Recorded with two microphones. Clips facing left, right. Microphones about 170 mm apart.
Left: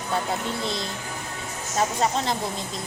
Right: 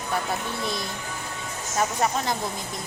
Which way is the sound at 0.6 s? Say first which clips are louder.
Left 1 dB; 25° left (ahead or behind).